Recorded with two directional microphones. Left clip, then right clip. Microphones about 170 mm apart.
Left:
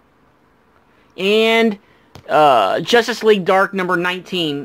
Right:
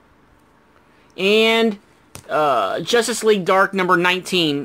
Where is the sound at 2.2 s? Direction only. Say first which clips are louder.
Left 6 dB; 25° left (ahead or behind).